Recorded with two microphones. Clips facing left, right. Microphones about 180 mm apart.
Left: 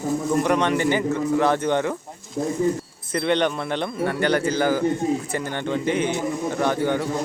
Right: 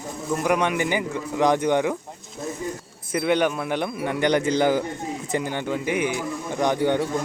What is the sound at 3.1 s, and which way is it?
Speech, 10° right (ahead or behind).